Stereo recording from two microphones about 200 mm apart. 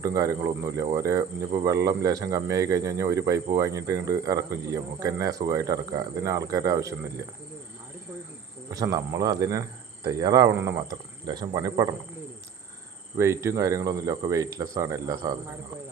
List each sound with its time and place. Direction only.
0.0 s speech: 15° right (ahead or behind)
8.7 s speech: 15° right (ahead or behind)
13.1 s speech: 15° right (ahead or behind)